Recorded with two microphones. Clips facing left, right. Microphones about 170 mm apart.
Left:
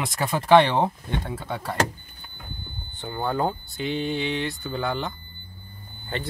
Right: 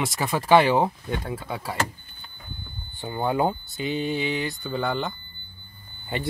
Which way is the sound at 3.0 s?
10° right (ahead or behind).